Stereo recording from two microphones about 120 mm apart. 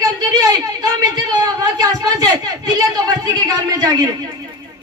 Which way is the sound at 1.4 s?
35° right (ahead or behind).